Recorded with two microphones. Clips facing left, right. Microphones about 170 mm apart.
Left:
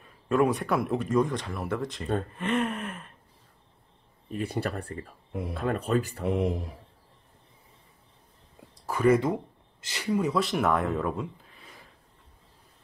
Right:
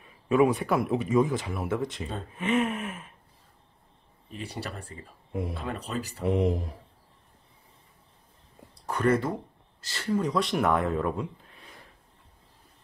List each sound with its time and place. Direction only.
0.0 s a man's voice: centre (ahead or behind)
4.3 s speech: 50° left (ahead or behind)
6.2 s a man's voice: centre (ahead or behind)
8.8 s speech: 5° left (ahead or behind)